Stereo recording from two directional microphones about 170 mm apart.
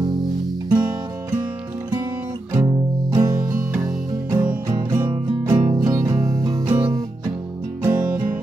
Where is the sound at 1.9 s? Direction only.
20° right (ahead or behind).